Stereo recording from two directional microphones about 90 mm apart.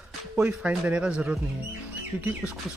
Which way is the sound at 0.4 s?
15° right (ahead or behind).